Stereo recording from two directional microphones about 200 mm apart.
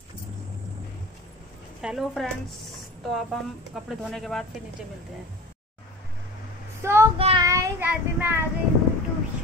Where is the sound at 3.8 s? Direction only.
Centre (ahead or behind).